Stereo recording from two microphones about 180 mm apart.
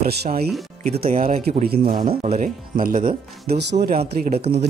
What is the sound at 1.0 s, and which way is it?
Speech, 50° right (ahead or behind).